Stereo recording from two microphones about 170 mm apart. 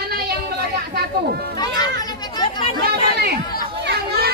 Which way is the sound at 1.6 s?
25° left (ahead or behind).